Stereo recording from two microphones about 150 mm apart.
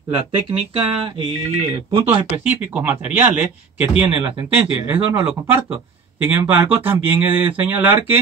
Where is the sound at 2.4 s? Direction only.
10° right (ahead or behind).